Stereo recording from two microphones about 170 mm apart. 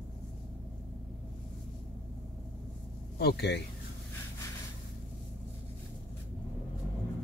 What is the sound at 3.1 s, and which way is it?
Speech, 70° left (ahead or behind).